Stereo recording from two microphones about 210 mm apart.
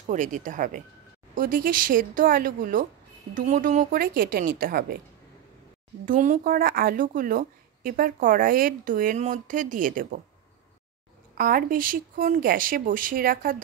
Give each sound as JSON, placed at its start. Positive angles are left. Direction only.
{"t": 0.1, "sound": "a woman's voice", "side_deg": -35}
{"t": 6.0, "sound": "a woman's voice", "side_deg": -40}
{"t": 11.3, "sound": "a woman's voice", "side_deg": -40}